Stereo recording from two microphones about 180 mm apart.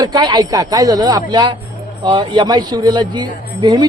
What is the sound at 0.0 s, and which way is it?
Speech, 25° right (ahead or behind).